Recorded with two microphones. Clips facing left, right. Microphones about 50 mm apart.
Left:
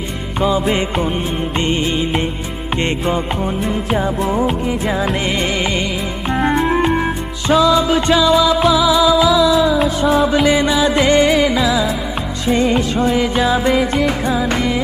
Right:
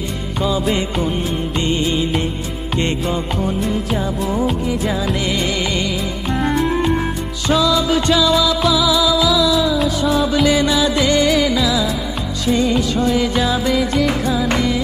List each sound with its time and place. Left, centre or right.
1.6 s music: left
3.4 s music: centre
4.3 s music: left
6.3 s music: left